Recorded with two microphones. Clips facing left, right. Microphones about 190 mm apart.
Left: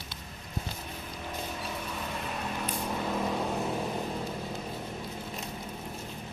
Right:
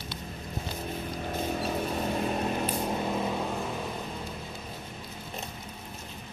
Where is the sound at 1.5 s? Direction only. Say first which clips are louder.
Right 7 dB; 40° right (ahead or behind); by 3.2 s 20° right (ahead or behind).